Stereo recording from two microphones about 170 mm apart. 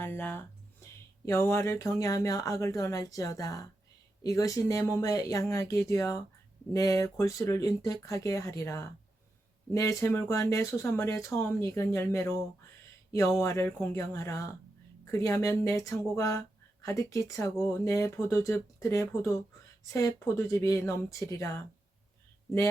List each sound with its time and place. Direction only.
0.0 s speech: 10° left (ahead or behind)